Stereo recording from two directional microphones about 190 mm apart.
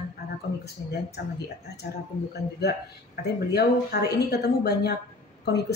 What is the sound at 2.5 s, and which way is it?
Speech, 60° left (ahead or behind).